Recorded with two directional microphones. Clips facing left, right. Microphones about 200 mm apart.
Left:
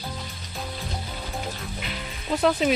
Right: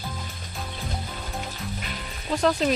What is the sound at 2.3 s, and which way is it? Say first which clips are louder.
Speech: left 1 dB; 5° left (ahead or behind).